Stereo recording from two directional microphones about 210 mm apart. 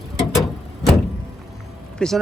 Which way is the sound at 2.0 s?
5° left (ahead or behind).